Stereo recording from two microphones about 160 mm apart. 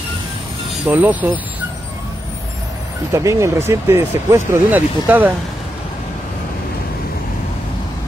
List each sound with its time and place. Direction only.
0.8 s speech: 10° right (ahead or behind)
3.1 s speech: 20° right (ahead or behind)